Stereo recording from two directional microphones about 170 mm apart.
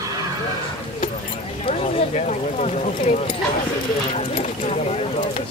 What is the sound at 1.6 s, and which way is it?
Speech, 40° left (ahead or behind).